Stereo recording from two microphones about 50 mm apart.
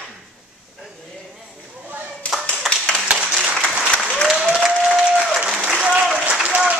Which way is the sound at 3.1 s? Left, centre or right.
Centre.